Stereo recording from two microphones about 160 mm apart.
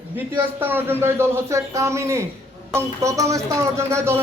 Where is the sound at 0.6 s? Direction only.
15° right (ahead or behind).